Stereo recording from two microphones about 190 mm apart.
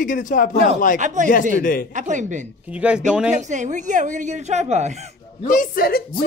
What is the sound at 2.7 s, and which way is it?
Speech, 5° right (ahead or behind).